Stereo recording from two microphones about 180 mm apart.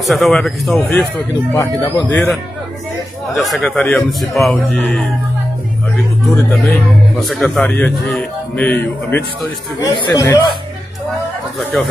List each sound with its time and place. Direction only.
0.0 s a man's voice: centre (ahead or behind)
1.5 s a man's voice: 15° left (ahead or behind)
3.3 s a man's voice: centre (ahead or behind)
6.3 s a man's voice: 5° left (ahead or behind)
9.8 s speech: 20° left (ahead or behind)